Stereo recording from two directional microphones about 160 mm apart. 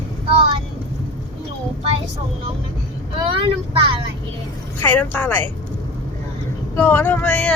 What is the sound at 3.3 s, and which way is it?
Vehicle, 30° right (ahead or behind).